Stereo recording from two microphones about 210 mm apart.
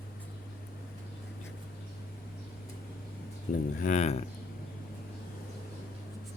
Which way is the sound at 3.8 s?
35° left (ahead or behind).